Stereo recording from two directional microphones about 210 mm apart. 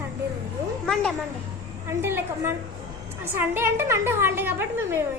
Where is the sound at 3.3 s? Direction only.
10° right (ahead or behind).